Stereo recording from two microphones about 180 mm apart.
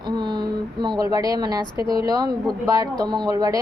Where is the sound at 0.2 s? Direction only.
25° right (ahead or behind).